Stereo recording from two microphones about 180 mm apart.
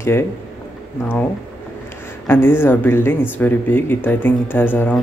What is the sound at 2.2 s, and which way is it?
Speech, 10° left (ahead or behind).